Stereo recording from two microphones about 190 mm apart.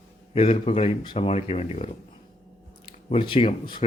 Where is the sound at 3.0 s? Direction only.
30° left (ahead or behind).